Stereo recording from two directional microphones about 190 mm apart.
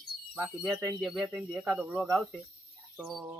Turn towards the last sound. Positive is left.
turn(degrees=0)  # may be behind; listen again after turning